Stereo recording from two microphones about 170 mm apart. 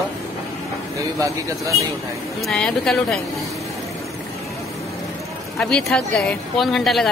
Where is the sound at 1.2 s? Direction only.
20° right (ahead or behind).